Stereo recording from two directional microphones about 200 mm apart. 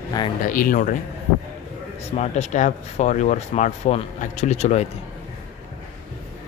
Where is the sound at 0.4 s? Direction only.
45° left (ahead or behind).